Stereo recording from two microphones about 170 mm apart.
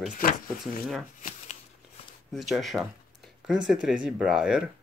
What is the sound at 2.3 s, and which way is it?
Speech, centre (ahead or behind).